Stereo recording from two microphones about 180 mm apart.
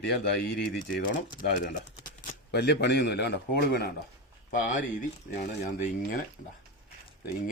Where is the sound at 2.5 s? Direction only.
65° left (ahead or behind).